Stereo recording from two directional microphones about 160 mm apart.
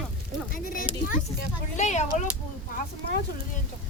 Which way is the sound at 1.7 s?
50° left (ahead or behind).